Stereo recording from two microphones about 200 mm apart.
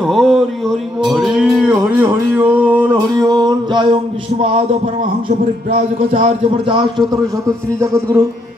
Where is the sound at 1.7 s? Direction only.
15° right (ahead or behind).